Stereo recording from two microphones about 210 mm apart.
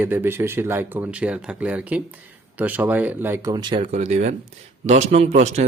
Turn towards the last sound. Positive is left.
turn(degrees=-35)  # may be behind; listen again after turning